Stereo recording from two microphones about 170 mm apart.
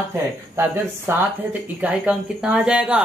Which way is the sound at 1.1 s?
15° right (ahead or behind).